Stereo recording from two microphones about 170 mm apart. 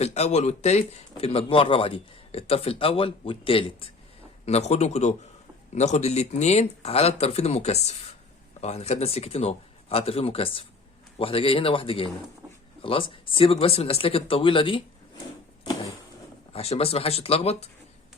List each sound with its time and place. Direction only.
0.0 s speech: 40° left (ahead or behind)
16.5 s speech: 35° left (ahead or behind)